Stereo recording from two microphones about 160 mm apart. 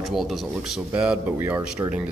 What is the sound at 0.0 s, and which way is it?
Speech, centre (ahead or behind).